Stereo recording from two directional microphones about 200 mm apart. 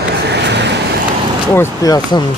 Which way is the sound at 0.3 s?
60° right (ahead or behind).